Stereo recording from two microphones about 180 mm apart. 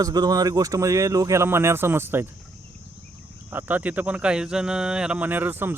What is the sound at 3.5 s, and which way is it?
Speech, 10° right (ahead or behind).